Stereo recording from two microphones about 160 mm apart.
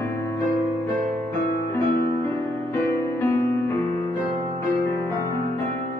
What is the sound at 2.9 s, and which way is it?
Music, 15° left (ahead or behind).